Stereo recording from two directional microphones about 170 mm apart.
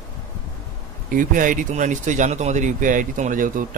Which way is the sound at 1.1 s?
50° right (ahead or behind).